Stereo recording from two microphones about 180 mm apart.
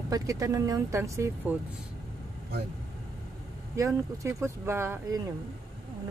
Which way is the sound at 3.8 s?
15° right (ahead or behind).